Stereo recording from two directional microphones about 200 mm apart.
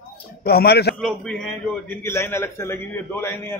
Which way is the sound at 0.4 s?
55° left (ahead or behind).